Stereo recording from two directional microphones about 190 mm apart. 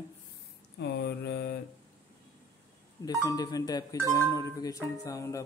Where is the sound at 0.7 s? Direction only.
65° left (ahead or behind).